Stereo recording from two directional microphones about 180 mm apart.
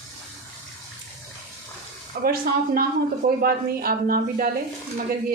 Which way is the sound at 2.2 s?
55° right (ahead or behind).